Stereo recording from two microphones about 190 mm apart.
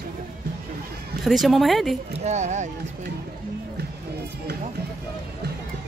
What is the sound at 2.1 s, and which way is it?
Speech, 35° right (ahead or behind).